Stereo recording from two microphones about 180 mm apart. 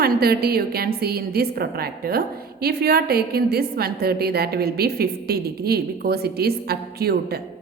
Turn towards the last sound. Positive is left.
turn(degrees=-60)  # may be behind; listen again after turning